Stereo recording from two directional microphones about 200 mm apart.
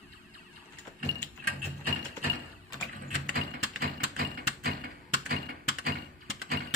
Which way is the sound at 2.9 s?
45° right (ahead or behind).